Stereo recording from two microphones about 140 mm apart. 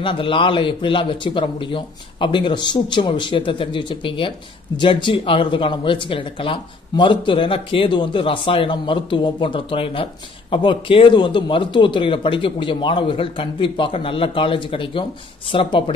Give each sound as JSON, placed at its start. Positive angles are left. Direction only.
{"t": 0.0, "sound": "speech", "side_deg": 35}